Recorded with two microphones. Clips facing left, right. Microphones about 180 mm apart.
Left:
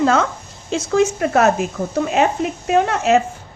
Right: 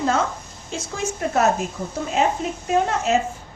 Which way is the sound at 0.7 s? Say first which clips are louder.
Left 11 dB; 80° left.